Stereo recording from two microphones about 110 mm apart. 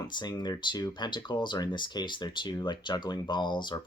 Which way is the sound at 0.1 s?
40° left (ahead or behind).